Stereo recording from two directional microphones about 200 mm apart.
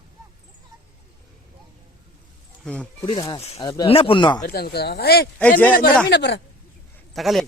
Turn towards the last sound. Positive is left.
turn(degrees=0)  # may be behind; listen again after turning